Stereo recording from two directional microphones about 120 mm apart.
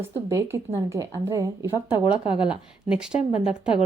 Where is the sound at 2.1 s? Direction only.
10° right (ahead or behind).